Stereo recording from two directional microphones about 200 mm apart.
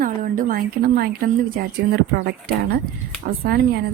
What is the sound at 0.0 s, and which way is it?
A woman's voice, 40° right (ahead or behind).